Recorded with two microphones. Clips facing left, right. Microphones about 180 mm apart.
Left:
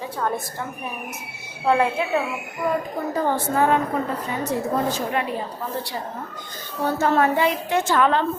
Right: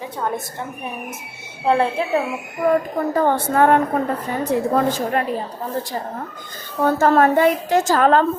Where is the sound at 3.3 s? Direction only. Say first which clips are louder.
Right 3 dB; 60° right (ahead or behind).